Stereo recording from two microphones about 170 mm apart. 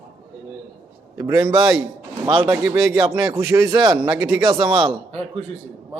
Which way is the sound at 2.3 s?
30° right (ahead or behind).